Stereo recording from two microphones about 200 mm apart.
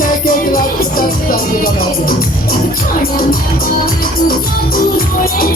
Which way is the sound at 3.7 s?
45° left (ahead or behind).